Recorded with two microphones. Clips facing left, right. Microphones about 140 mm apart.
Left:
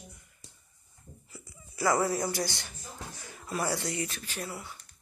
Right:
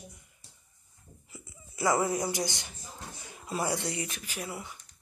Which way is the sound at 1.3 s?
20° right (ahead or behind).